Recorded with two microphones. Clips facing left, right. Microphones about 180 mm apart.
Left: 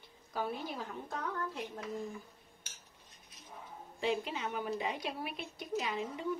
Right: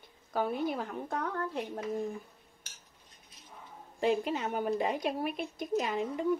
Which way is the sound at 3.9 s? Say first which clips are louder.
Right 6 dB; 45° right (ahead or behind).